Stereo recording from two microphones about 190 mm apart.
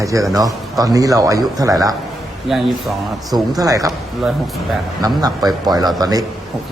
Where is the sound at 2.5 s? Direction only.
Centre (ahead or behind).